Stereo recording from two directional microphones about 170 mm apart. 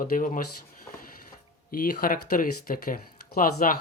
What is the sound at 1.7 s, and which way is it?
Speech, 55° left (ahead or behind).